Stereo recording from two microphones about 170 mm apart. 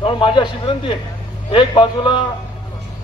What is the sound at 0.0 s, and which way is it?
A man's voice, 30° left (ahead or behind).